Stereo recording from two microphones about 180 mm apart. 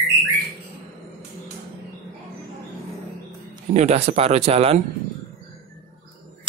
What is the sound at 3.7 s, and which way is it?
Speech, 35° right (ahead or behind).